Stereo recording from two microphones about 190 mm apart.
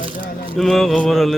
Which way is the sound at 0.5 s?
Centre (ahead or behind).